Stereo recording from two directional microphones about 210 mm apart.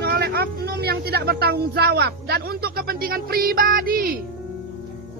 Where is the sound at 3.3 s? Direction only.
45° right (ahead or behind).